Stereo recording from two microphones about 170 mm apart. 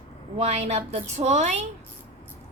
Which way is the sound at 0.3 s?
40° right (ahead or behind).